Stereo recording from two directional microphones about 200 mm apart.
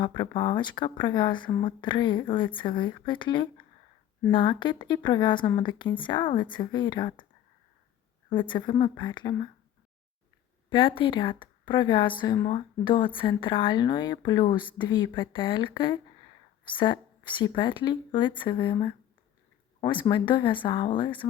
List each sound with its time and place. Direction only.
0.0 s speech: 25° left (ahead or behind)
8.3 s speech: 25° left (ahead or behind)
10.7 s speech: 25° left (ahead or behind)